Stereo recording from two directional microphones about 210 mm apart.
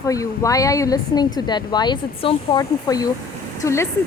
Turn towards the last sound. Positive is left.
turn(degrees=15)  # may be behind; listen again after turning